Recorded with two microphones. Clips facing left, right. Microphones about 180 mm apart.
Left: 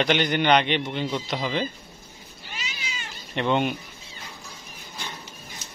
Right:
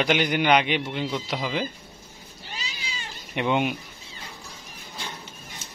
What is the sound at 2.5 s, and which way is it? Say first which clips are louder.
Cat: left 1 dB; 35° right (ahead or behind).